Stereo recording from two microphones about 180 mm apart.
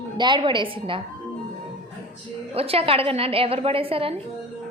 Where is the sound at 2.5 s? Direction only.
35° right (ahead or behind).